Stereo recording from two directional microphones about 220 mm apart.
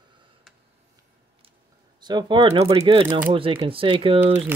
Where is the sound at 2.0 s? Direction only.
20° right (ahead or behind).